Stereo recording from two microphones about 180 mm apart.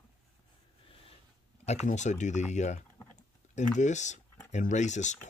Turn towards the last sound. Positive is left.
turn(degrees=40)  # may be behind; listen again after turning